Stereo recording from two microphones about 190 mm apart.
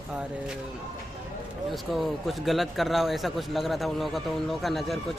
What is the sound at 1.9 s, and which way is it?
Speech, centre (ahead or behind).